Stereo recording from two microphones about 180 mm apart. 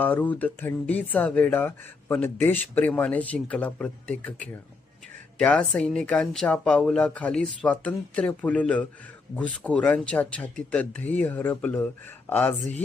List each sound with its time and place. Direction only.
0.0 s speech: 10° left (ahead or behind)